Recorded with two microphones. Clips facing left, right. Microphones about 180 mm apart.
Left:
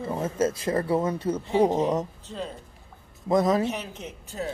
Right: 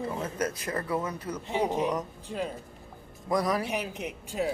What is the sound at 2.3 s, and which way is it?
Speech, 10° right (ahead or behind).